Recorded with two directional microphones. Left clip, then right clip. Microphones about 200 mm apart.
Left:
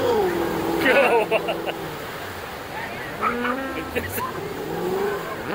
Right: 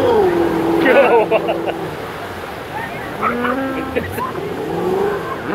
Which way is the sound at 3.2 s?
45° right (ahead or behind).